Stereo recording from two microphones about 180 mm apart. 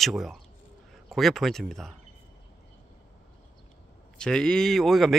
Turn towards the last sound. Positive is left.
turn(degrees=0)  # may be behind; listen again after turning